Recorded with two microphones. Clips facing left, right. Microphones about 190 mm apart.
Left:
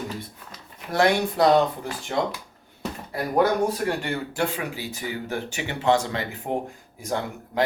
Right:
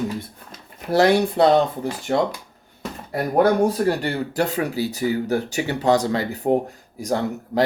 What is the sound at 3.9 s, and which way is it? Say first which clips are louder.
Speech: right 5 dB; 35° right (ahead or behind).